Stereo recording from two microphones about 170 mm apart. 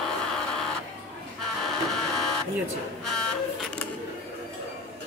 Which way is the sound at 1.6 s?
Centre (ahead or behind).